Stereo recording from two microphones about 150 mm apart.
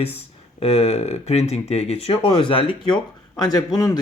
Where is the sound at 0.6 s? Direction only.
45° left (ahead or behind).